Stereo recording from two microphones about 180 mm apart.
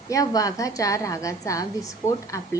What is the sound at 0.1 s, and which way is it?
A woman's voice, 20° left (ahead or behind).